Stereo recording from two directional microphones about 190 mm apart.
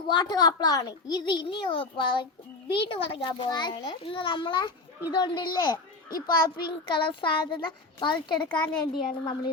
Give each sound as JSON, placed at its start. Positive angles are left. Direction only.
{"t": 0.1, "sound": "a child's voice", "side_deg": 20}